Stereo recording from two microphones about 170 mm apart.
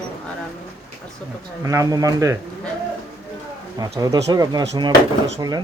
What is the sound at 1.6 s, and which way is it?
Speech, 20° right (ahead or behind).